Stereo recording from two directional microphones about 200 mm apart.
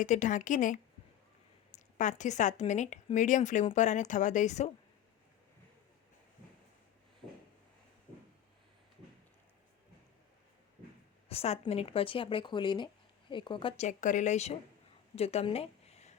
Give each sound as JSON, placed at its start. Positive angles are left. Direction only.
{"t": 0.0, "sound": "speech", "side_deg": 40}
{"t": 11.3, "sound": "speech", "side_deg": 30}
{"t": 15.1, "sound": "a sound", "side_deg": 30}